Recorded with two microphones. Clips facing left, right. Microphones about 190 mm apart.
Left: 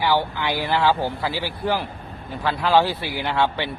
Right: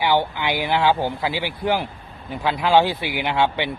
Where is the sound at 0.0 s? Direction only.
15° right (ahead or behind).